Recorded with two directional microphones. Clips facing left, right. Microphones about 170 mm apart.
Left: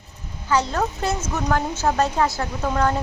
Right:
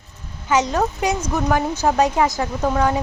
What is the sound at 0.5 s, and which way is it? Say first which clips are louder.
Speech: right 3 dB; 15° right (ahead or behind).